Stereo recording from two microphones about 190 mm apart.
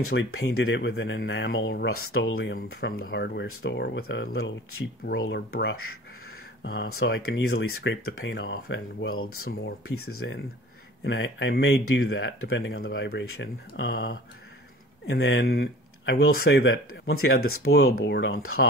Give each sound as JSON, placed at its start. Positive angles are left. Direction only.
{"t": 0.0, "sound": "speech", "side_deg": 70}
{"t": 2.3, "sound": "speech", "side_deg": 55}
{"t": 6.6, "sound": "speech", "side_deg": 70}
{"t": 9.8, "sound": "speech", "side_deg": 90}
{"t": 11.1, "sound": "speech", "side_deg": 70}
{"t": 12.8, "sound": "speech", "side_deg": 60}
{"t": 16.2, "sound": "speech", "side_deg": 75}
{"t": 17.2, "sound": "speech", "side_deg": 90}